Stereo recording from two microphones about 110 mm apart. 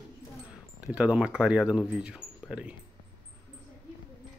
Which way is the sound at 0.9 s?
10° right (ahead or behind).